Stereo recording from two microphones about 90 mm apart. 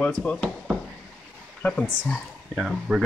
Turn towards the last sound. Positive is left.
turn(degrees=-5)  # may be behind; listen again after turning